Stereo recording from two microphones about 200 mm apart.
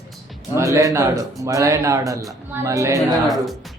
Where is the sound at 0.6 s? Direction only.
15° right (ahead or behind).